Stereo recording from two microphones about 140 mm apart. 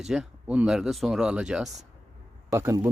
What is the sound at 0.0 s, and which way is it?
Speech, 5° right (ahead or behind).